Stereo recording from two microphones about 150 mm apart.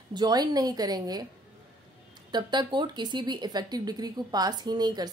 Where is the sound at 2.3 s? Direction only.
30° right (ahead or behind).